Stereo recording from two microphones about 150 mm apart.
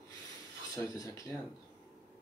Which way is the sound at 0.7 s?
25° left (ahead or behind).